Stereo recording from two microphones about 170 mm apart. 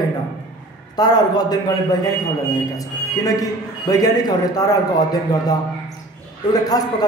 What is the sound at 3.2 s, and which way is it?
A man's voice, 20° left (ahead or behind).